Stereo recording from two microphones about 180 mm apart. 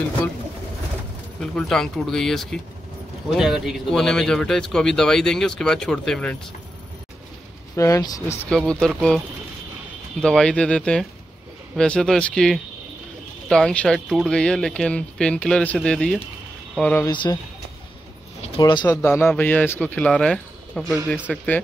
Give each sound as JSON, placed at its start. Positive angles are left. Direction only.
{"t": 1.4, "sound": "a man's voice", "side_deg": 5}
{"t": 7.7, "sound": "speech", "side_deg": 15}
{"t": 8.5, "sound": "a man's voice", "side_deg": 5}
{"t": 10.2, "sound": "a man's voice", "side_deg": 5}
{"t": 17.0, "sound": "speech", "side_deg": 25}
{"t": 18.6, "sound": "speech", "side_deg": 25}
{"t": 18.9, "sound": "a man's voice", "side_deg": 10}